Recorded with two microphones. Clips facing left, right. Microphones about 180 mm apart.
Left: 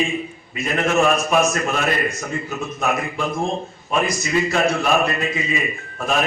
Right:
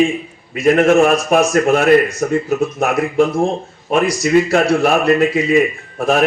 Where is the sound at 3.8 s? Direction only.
60° right (ahead or behind).